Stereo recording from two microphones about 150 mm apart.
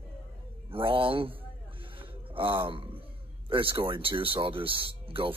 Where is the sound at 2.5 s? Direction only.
35° right (ahead or behind).